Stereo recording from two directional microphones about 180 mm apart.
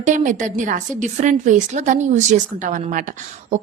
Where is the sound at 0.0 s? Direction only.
45° right (ahead or behind).